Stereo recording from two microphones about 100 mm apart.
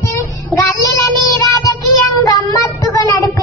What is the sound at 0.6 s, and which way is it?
Child singing, 35° left (ahead or behind).